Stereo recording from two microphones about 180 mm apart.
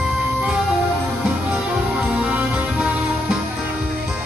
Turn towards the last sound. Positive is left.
turn(degrees=-5)  # may be behind; listen again after turning